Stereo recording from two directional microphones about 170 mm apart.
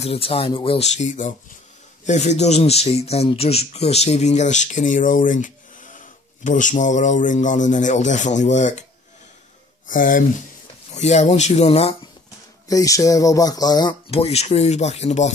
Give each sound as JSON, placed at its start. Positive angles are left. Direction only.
{"t": 0.0, "sound": "speech", "side_deg": 35}
{"t": 0.9, "sound": "speech", "side_deg": 45}
{"t": 9.8, "sound": "speech", "side_deg": 50}
{"t": 10.9, "sound": "speech", "side_deg": 40}
{"t": 12.6, "sound": "speech", "side_deg": 20}
{"t": 14.2, "sound": "speech", "side_deg": 40}